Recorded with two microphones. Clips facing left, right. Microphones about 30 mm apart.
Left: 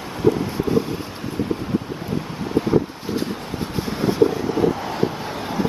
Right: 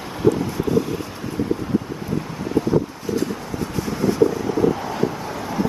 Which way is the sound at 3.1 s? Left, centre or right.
Left.